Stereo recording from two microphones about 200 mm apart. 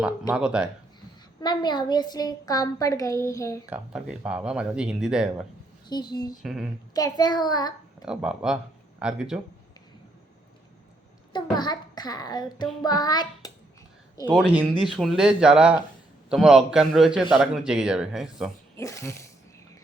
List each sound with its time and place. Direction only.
0.0 s a man's voice: 5° right (ahead or behind)
1.4 s a woman's voice: 20° left (ahead or behind)
3.7 s a man's voice: 5° right (ahead or behind)
5.9 s a woman's voice: 20° left (ahead or behind)
6.4 s a man's voice: centre (ahead or behind)
6.9 s a child's voice: 20° left (ahead or behind)
8.0 s a man's voice: 5° right (ahead or behind)
11.5 s a child's voice: 20° left (ahead or behind)
14.8 s a man's voice: centre (ahead or behind)
18.8 s speech: 15° left (ahead or behind)